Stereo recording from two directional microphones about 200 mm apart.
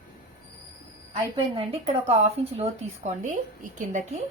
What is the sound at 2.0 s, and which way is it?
A woman's voice, 30° right (ahead or behind).